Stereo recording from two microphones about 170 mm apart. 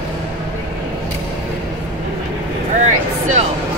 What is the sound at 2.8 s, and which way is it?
Vehicle, 45° right (ahead or behind).